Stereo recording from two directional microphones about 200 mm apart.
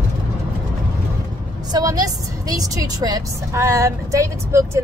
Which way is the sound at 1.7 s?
20° right (ahead or behind).